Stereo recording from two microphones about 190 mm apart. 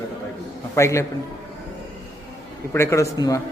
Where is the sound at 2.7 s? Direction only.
15° left (ahead or behind).